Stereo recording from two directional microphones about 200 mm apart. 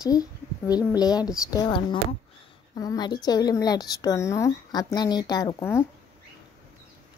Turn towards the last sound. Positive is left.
turn(degrees=10)  # may be behind; listen again after turning